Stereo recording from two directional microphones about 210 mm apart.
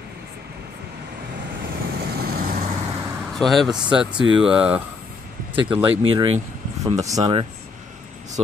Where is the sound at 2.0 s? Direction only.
50° right (ahead or behind).